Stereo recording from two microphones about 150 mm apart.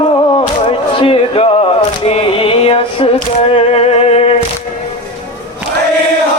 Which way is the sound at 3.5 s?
40° left (ahead or behind).